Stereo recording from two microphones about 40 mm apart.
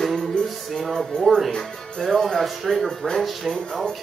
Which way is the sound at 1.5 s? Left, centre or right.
Centre.